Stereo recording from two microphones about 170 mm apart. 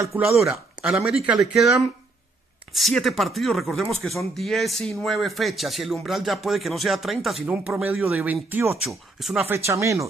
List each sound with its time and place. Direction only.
0.5 s speech: 5° right (ahead or behind)
7.4 s speech: 10° right (ahead or behind)
9.4 s speech: 15° right (ahead or behind)